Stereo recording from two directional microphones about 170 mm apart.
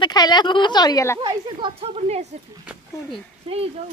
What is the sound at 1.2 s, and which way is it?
Speech, 30° right (ahead or behind).